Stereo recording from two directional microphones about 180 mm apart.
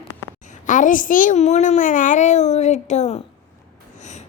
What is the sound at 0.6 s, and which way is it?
A child's voice, 45° left (ahead or behind).